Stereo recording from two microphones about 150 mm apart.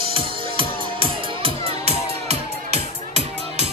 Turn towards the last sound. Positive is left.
turn(degrees=-45)  # may be behind; listen again after turning